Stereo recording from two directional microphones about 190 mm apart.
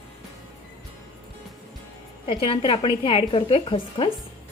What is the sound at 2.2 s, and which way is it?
A woman's voice, 25° left (ahead or behind).